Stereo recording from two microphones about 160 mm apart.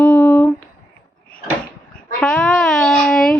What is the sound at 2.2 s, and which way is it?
A child's voice, 5° left (ahead or behind).